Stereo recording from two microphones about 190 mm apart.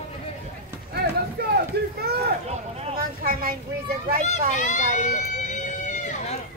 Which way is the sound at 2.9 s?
50° right (ahead or behind).